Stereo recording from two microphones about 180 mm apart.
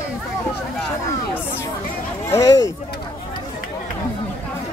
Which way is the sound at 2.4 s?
20° left (ahead or behind).